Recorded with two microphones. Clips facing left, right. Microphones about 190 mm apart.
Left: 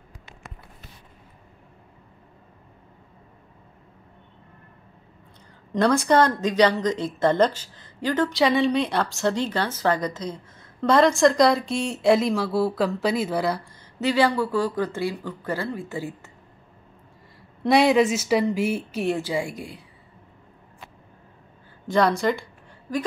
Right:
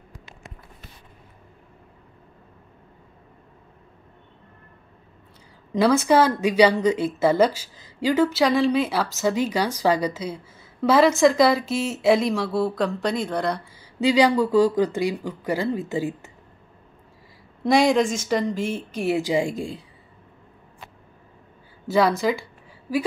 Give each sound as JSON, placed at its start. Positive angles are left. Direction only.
{"t": 5.7, "sound": "speech", "side_deg": -5}
{"t": 13.7, "sound": "speech", "side_deg": -10}
{"t": 17.6, "sound": "speech", "side_deg": 0}
{"t": 19.0, "sound": "speech", "side_deg": -10}
{"t": 19.3, "sound": "speech", "side_deg": -25}
{"t": 21.8, "sound": "speech", "side_deg": -5}